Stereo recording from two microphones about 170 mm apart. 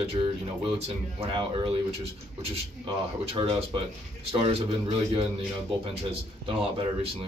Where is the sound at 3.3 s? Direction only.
35° right (ahead or behind).